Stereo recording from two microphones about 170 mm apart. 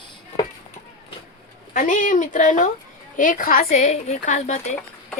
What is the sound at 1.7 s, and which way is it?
A woman's voice, 50° left (ahead or behind).